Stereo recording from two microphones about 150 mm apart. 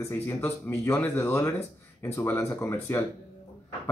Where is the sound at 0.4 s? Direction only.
15° left (ahead or behind).